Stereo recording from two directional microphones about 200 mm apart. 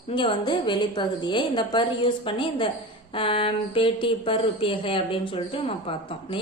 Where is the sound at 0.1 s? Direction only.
25° left (ahead or behind).